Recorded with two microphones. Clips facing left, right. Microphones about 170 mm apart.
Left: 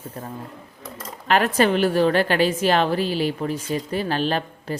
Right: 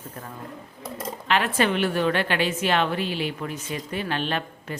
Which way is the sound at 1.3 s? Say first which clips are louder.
Left 4 dB; 40° left (ahead or behind).